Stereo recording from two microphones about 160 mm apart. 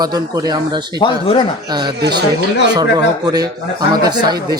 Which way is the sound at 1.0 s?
30° left (ahead or behind).